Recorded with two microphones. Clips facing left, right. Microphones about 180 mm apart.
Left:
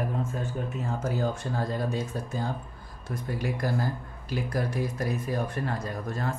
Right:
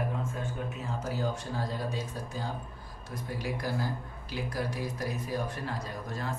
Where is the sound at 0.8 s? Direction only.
50° left (ahead or behind).